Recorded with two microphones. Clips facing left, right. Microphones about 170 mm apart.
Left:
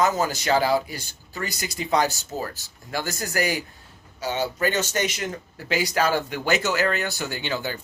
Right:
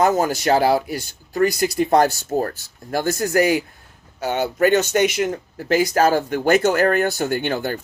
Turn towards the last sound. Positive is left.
turn(degrees=-55)  # may be behind; listen again after turning